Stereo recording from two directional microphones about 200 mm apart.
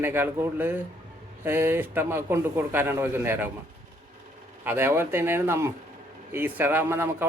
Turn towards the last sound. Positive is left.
turn(degrees=-10)  # may be behind; listen again after turning